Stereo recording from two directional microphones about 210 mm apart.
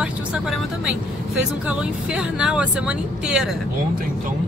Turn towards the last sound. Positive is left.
turn(degrees=-5)  # may be behind; listen again after turning